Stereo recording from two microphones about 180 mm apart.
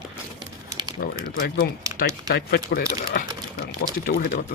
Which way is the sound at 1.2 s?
50° left (ahead or behind).